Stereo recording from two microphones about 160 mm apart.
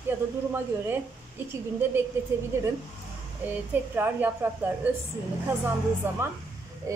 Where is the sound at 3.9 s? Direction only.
10° right (ahead or behind).